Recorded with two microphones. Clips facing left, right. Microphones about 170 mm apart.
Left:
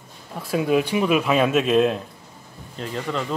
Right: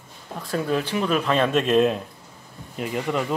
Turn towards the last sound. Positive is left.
turn(degrees=-10)  # may be behind; listen again after turning